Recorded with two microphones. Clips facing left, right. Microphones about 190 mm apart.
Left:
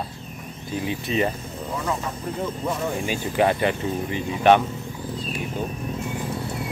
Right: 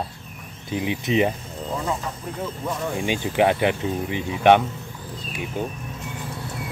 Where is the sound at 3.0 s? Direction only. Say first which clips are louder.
Right 2 dB; 15° right (ahead or behind).